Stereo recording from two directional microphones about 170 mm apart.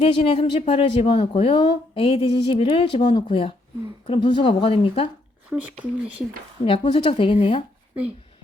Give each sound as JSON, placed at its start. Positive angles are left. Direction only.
{"t": 0.0, "sound": "speech", "side_deg": 35}
{"t": 5.5, "sound": "speech", "side_deg": -10}
{"t": 6.7, "sound": "speech", "side_deg": 30}